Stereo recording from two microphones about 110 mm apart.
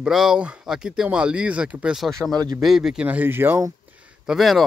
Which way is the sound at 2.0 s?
5° left (ahead or behind).